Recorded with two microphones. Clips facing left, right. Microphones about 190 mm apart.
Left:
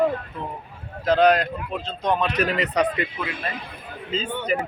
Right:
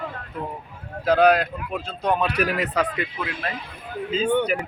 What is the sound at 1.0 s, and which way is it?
A man's voice, 10° right (ahead or behind).